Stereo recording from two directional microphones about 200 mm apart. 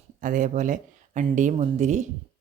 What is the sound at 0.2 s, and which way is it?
A woman's voice, 40° right (ahead or behind).